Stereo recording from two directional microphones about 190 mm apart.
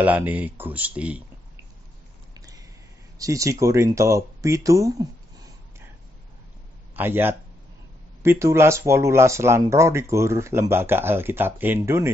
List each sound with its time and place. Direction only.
0.0 s speech: 10° right (ahead or behind)
2.3 s a sound: 20° right (ahead or behind)
3.2 s speech: 15° right (ahead or behind)
7.0 s speech: 10° right (ahead or behind)